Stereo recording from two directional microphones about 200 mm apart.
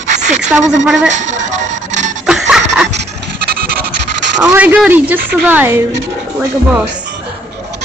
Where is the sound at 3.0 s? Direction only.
50° right (ahead or behind).